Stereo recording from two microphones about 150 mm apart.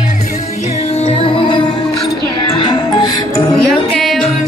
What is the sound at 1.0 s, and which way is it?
Music, 35° left (ahead or behind).